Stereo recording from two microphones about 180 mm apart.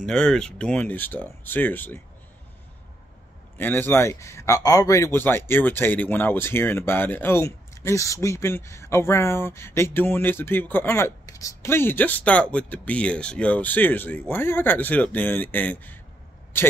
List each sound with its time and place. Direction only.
0.0 s speech: 5° left (ahead or behind)
3.5 s speech: 10° left (ahead or behind)